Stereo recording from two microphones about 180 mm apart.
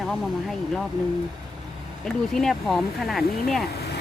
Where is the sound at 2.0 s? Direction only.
Centre (ahead or behind).